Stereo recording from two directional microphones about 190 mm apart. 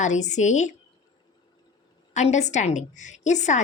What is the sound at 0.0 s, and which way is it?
Speech, 40° left (ahead or behind).